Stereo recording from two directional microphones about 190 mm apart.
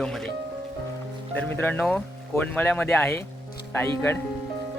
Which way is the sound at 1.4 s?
10° left (ahead or behind).